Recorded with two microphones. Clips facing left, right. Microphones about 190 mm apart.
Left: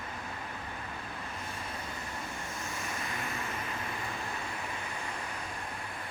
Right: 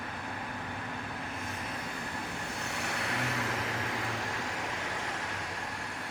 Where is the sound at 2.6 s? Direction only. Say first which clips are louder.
Right 4 dB; 70° right (ahead or behind); by 5.3 s 90° right.